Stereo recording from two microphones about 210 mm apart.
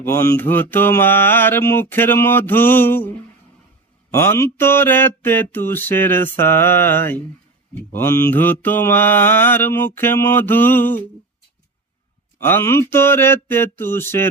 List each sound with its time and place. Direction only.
0.0 s mantra: 15° left (ahead or behind)
4.1 s mantra: 10° left (ahead or behind)
12.4 s mantra: 10° left (ahead or behind)